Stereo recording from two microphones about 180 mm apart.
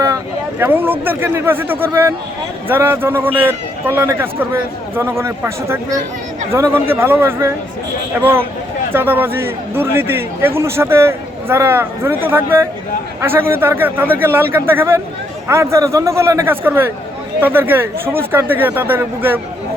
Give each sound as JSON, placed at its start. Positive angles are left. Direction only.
{"t": 0.6, "sound": "a man's voice", "side_deg": -10}